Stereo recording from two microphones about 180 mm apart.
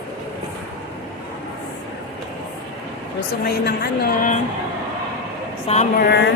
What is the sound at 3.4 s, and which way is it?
Speech, 60° left (ahead or behind).